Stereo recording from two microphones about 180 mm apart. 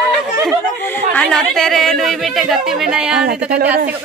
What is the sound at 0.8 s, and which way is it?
Speech, 10° left (ahead or behind).